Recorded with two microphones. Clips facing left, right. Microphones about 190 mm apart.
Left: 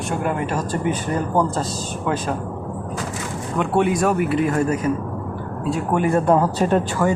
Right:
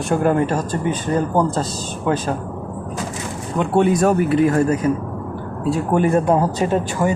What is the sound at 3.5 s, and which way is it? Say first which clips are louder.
Speech: right 3 dB; 25° right (ahead or behind).